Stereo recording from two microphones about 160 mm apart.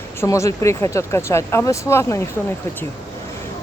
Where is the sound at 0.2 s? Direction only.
20° left (ahead or behind).